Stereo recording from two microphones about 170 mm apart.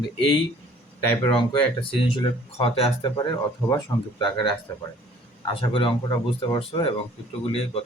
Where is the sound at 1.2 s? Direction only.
30° left (ahead or behind).